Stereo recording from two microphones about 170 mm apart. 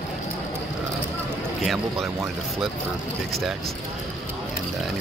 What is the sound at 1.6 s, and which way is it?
Speech, centre (ahead or behind).